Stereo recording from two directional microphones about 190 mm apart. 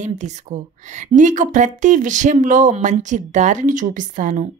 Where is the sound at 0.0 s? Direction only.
40° right (ahead or behind).